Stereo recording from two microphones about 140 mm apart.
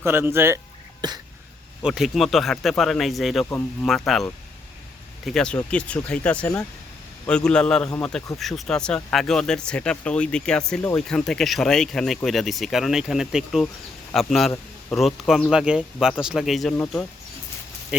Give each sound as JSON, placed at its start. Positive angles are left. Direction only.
{"t": 0.0, "sound": "speech", "side_deg": -15}
{"t": 1.0, "sound": "a sound", "side_deg": -30}
{"t": 1.8, "sound": "speech", "side_deg": 0}